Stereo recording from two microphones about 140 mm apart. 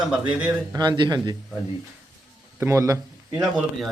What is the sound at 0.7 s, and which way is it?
Speech, 35° right (ahead or behind).